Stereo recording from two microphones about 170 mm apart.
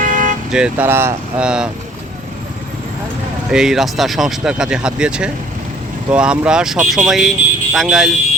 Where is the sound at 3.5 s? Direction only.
5° right (ahead or behind).